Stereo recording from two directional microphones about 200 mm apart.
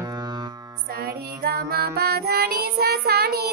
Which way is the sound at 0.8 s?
50° right (ahead or behind).